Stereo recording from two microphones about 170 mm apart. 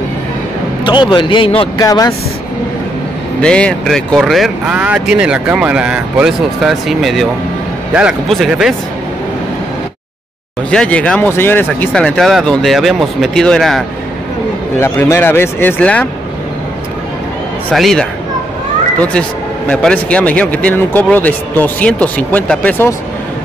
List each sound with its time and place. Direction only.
0.8 s a man's voice: 30° left (ahead or behind)
3.3 s speech: 5° left (ahead or behind)
10.7 s a man's voice: 5° left (ahead or behind)
14.8 s a man's voice: 15° left (ahead or behind)
17.6 s speech: centre (ahead or behind)
19.7 s a man's voice: 5° left (ahead or behind)